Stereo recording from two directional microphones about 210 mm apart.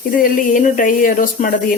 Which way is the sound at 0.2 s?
40° left (ahead or behind).